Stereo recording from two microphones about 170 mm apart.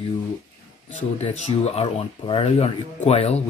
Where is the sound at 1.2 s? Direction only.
40° left (ahead or behind).